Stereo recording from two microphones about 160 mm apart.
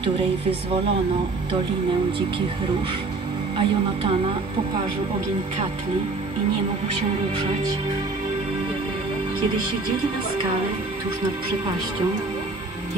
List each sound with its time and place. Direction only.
3.5 s speech: 35° right (ahead or behind)